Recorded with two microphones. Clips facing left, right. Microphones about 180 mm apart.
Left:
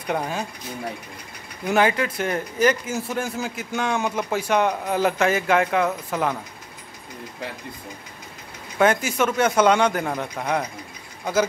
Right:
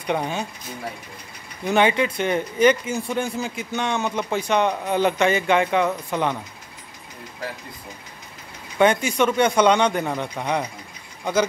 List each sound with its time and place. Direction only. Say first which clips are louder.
0.0 s speech: right 1 dB; 5° left (ahead or behind)
1.7 s speech: right 1 dB; centre (ahead or behind)
8.7 s speech: right 1 dB; 5° left (ahead or behind)